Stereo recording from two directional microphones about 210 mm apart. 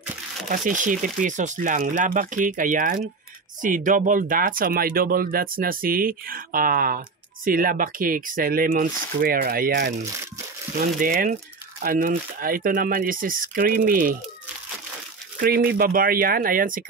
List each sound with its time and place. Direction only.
0.5 s speech: 40° right (ahead or behind)
15.3 s speech: 45° right (ahead or behind)